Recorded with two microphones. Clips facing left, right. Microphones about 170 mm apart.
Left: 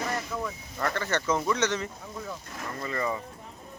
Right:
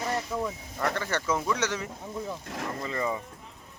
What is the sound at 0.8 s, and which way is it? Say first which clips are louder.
Speech: even; 10° right (ahead or behind).